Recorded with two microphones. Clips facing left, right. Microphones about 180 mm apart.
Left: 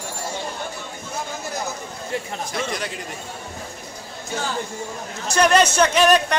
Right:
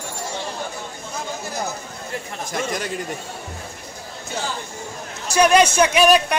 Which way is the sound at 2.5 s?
45° right (ahead or behind).